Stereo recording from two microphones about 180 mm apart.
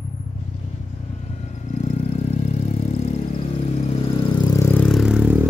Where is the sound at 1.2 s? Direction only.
40° left (ahead or behind); by 4.8 s 15° left (ahead or behind).